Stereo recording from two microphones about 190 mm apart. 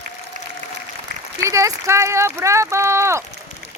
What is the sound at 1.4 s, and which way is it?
Speech, 15° right (ahead or behind).